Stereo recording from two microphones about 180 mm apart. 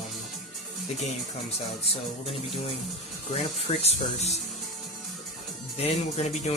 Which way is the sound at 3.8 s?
35° left (ahead or behind).